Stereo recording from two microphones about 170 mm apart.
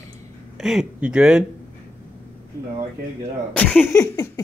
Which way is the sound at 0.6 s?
5° right (ahead or behind).